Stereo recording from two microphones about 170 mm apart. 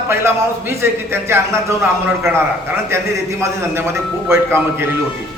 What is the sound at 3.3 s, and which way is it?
Speech, 15° right (ahead or behind).